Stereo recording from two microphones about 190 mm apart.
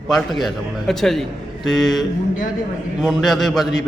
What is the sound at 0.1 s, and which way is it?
A man's voice, centre (ahead or behind).